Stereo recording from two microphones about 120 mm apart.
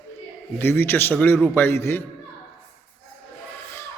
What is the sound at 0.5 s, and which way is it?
Speech, 20° left (ahead or behind).